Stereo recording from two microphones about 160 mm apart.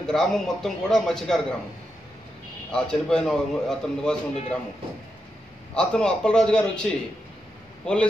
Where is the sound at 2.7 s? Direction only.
5° left (ahead or behind).